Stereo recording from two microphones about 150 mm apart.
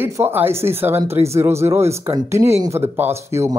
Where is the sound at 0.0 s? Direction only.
15° right (ahead or behind).